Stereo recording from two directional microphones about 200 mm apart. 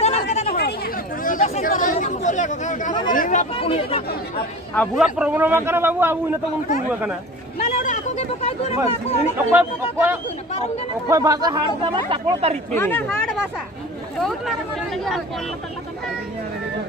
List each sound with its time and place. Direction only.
0.0 s chatter: 35° left (ahead or behind)
3.1 s speech: 40° left (ahead or behind)
3.5 s speech: 30° left (ahead or behind)
4.7 s a man's voice: centre (ahead or behind)
7.5 s a sound: 40° left (ahead or behind)
8.8 s speech: 30° left (ahead or behind)
9.5 s a man's voice: 10° right (ahead or behind); by 12.5 s 30° right (ahead or behind)
12.7 s speech: 10° left (ahead or behind)